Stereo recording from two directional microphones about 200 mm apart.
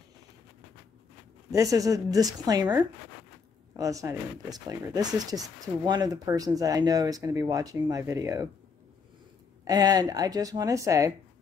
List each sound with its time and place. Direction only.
1.5 s speech: 15° right (ahead or behind)
3.7 s speech: 15° right (ahead or behind)
9.7 s a woman's voice: 20° right (ahead or behind)